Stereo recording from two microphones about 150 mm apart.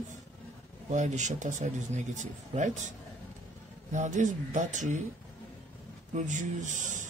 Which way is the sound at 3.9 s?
55° right (ahead or behind).